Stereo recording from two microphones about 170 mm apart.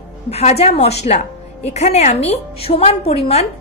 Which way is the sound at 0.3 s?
40° left (ahead or behind).